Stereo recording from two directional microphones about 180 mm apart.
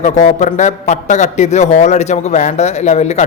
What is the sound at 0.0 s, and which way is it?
A man's voice, 40° left (ahead or behind).